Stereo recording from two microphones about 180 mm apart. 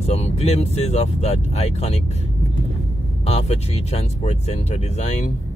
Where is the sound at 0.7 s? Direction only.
35° left (ahead or behind).